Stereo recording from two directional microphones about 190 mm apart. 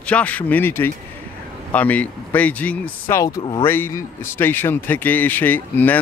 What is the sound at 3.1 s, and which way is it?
Speech, 20° left (ahead or behind).